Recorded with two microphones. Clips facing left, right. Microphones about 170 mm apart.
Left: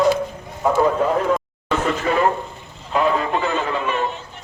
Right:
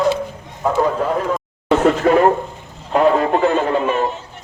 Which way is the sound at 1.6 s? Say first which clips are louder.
Right 8 dB; 60° right (ahead or behind).